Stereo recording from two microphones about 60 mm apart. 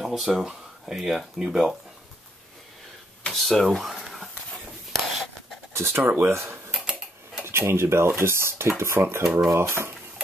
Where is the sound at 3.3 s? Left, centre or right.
Centre.